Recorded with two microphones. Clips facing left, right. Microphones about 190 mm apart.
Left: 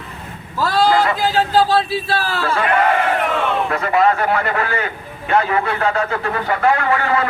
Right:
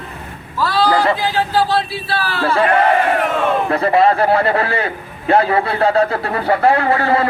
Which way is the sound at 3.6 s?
35° right (ahead or behind).